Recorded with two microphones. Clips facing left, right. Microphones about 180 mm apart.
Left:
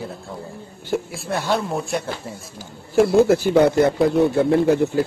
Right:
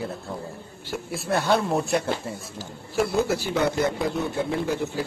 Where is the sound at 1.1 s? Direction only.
Centre (ahead or behind).